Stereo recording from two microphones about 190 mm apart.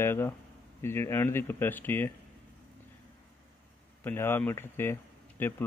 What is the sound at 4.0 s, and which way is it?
A man's voice, 10° left (ahead or behind).